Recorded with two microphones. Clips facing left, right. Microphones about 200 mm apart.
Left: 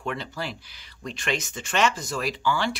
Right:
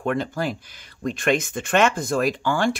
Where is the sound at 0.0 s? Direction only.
50° right (ahead or behind).